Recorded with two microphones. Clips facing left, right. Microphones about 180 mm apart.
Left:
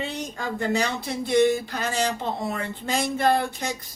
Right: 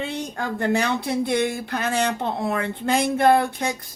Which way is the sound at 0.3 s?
60° right (ahead or behind).